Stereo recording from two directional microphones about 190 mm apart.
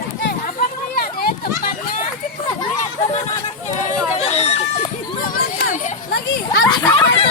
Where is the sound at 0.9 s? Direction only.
50° left (ahead or behind).